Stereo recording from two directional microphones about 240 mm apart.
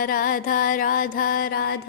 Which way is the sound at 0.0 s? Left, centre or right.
Left.